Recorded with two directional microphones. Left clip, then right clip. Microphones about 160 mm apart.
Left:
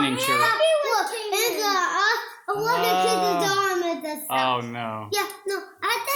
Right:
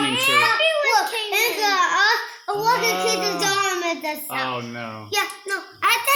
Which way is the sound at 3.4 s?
15° right (ahead or behind).